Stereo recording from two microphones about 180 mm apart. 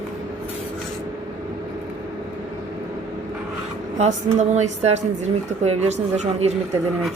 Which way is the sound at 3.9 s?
40° right (ahead or behind).